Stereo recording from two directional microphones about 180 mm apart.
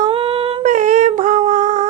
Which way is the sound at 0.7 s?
45° right (ahead or behind).